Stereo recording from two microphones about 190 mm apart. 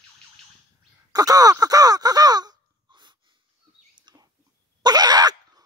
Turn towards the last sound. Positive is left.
turn(degrees=-20)  # may be behind; listen again after turning